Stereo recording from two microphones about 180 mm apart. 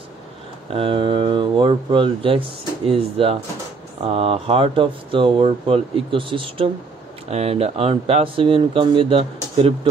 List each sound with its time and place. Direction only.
0.7 s speech: 30° right (ahead or behind)